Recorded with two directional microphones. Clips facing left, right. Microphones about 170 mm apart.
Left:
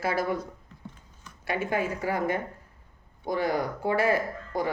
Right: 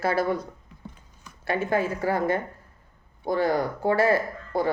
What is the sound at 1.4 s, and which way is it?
Speech, 15° left (ahead or behind).